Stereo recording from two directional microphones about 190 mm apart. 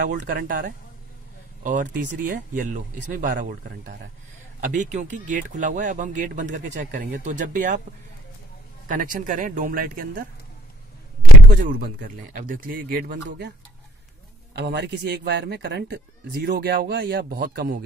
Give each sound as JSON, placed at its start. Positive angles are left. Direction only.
{"t": 0.0, "sound": "speech", "side_deg": -40}
{"t": 8.8, "sound": "speech", "side_deg": -45}
{"t": 11.4, "sound": "speech", "side_deg": -45}
{"t": 14.5, "sound": "speech", "side_deg": -65}